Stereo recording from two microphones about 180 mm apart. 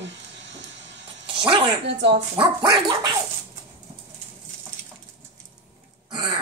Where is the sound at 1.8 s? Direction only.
75° right (ahead or behind).